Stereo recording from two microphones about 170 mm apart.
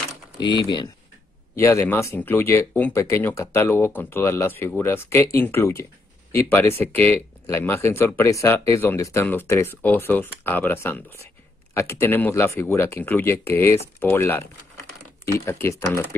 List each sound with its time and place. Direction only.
0.6 s speech: 25° left (ahead or behind)
1.6 s speech: 15° left (ahead or behind)